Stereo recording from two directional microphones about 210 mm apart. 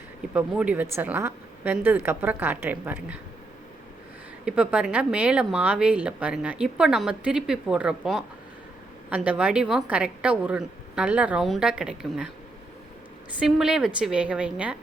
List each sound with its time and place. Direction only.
0.3 s a woman's voice: 5° right (ahead or behind)
4.4 s a woman's voice: 5° right (ahead or behind)
13.4 s a woman's voice: centre (ahead or behind)